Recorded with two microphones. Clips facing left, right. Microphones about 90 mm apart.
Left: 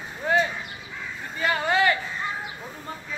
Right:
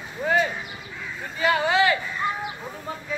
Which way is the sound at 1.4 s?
5° right (ahead or behind).